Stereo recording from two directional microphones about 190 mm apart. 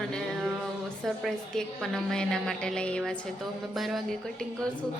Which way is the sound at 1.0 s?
Centre (ahead or behind).